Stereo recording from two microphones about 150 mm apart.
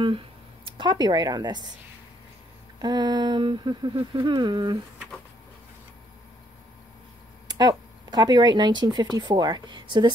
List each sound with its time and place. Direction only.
0.7 s speech: 30° right (ahead or behind)
2.8 s speech: 30° right (ahead or behind)
7.4 s speech: 25° right (ahead or behind)